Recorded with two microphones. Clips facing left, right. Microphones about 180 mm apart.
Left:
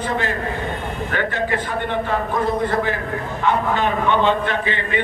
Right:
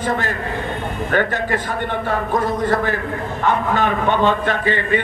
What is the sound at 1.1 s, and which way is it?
Speech, 45° right (ahead or behind).